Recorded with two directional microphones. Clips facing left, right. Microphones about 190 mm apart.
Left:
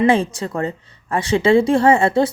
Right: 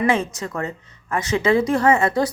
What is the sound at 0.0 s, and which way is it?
A woman's voice, 30° left (ahead or behind).